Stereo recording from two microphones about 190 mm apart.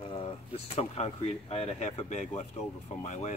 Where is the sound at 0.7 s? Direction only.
35° left (ahead or behind).